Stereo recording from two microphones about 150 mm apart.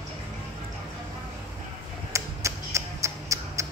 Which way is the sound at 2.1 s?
20° right (ahead or behind).